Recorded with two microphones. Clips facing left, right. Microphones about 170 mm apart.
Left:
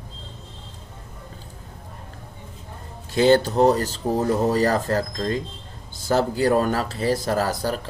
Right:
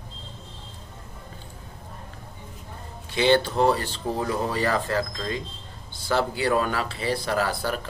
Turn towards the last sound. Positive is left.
turn(degrees=40)  # may be behind; listen again after turning